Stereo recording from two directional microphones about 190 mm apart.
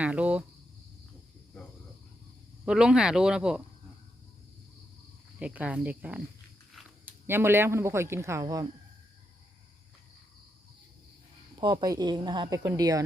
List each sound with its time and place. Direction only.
0.0 s speech: 5° right (ahead or behind)
2.6 s speech: 5° right (ahead or behind)
5.4 s speech: 5° right (ahead or behind)
11.5 s speech: 20° right (ahead or behind)